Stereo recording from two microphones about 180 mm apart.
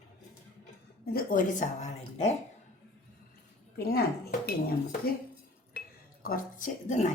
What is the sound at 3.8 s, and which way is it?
Speech, 60° left (ahead or behind).